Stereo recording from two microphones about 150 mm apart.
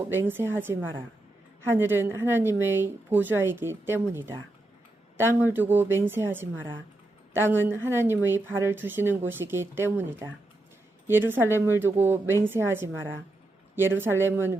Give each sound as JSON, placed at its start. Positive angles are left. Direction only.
{"t": 0.1, "sound": "a woman's voice", "side_deg": -15}